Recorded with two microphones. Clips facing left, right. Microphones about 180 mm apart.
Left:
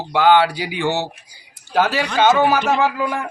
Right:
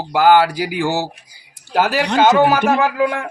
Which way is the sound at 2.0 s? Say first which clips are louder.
Right 4 dB; 70° right (ahead or behind).